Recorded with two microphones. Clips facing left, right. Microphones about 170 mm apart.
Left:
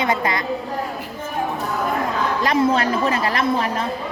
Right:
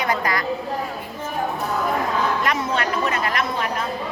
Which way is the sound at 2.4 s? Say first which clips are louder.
Left 5 dB; 30° left (ahead or behind).